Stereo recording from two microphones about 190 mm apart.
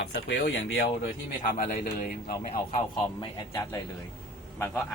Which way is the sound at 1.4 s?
45° left (ahead or behind).